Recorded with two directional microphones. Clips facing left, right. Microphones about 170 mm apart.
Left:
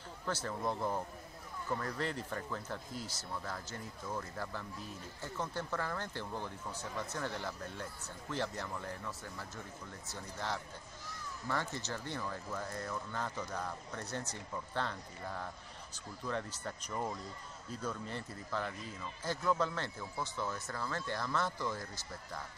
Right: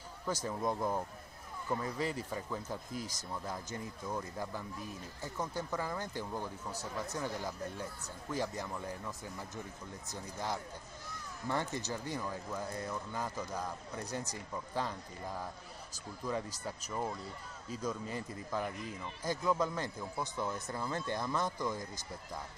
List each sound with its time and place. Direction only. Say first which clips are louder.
0.3 s speech: right 2 dB; 15° right (ahead or behind)
11.4 s speech: right 2 dB; 15° right (ahead or behind)